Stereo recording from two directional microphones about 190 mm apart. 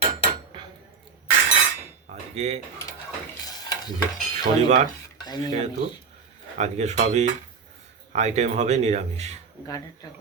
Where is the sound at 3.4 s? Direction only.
20° left (ahead or behind).